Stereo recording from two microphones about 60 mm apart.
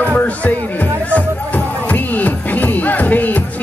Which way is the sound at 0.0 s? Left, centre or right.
Left.